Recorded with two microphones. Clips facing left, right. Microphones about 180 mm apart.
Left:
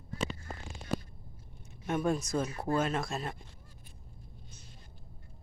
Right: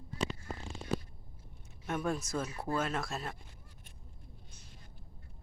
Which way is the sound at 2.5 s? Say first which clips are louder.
Left 4 dB; 30° left (ahead or behind).